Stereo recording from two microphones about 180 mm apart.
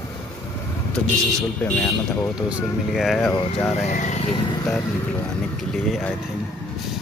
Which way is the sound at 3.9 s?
40° left (ahead or behind).